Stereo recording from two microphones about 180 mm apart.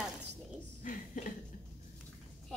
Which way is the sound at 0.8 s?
45° left (ahead or behind).